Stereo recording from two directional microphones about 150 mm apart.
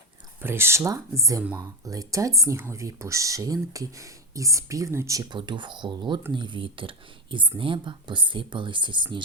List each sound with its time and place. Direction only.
0.4 s speech: 15° right (ahead or behind)
5.4 s speech: 30° right (ahead or behind)